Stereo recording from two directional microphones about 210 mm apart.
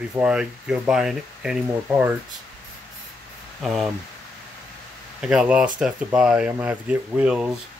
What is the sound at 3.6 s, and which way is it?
Speech, centre (ahead or behind).